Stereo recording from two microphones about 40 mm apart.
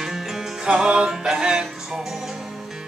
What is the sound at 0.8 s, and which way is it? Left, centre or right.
Music, right.